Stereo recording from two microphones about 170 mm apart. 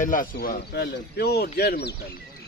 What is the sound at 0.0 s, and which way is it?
Speech, 55° left (ahead or behind).